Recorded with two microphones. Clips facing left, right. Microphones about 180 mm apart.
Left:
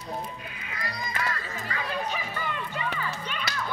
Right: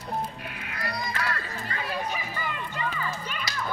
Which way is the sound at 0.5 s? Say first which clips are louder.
Right 3 dB; 60° right (ahead or behind).